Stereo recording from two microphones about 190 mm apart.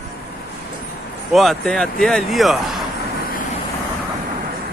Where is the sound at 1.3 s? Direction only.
Centre (ahead or behind).